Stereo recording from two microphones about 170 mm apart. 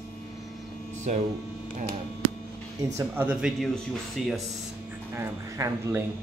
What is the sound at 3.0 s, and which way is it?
Speech, 10° right (ahead or behind).